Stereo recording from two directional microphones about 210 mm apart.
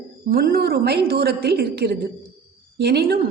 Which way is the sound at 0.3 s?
45° right (ahead or behind).